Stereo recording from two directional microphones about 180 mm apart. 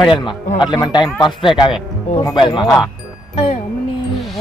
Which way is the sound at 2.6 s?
Centre (ahead or behind).